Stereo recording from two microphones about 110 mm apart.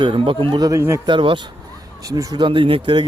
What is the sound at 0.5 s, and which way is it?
Speech, 35° right (ahead or behind).